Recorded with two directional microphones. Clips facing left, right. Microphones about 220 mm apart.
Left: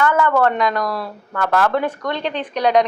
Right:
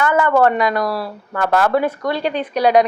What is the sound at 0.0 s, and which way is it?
A woman's voice, 10° right (ahead or behind).